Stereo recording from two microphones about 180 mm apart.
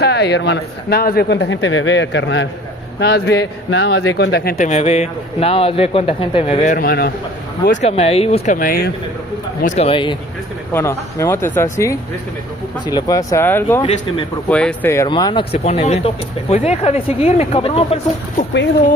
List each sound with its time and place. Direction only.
0.0 s a man's voice: 65° left (ahead or behind); by 2.4 s 85° left
3.0 s a man's voice: 65° left (ahead or behind)
4.6 s speech: 40° left (ahead or behind)
6.8 s speech: 55° left (ahead or behind)
7.8 s speech: 35° left (ahead or behind)
8.5 s speech: 55° left (ahead or behind)
9.6 s speech: 40° left (ahead or behind)
10.7 s speech: 15° left (ahead or behind)
12.8 s speech: 20° left (ahead or behind)
15.0 s speech: 25° left (ahead or behind)